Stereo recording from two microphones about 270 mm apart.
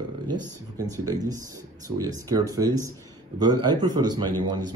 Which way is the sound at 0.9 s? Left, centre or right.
Centre.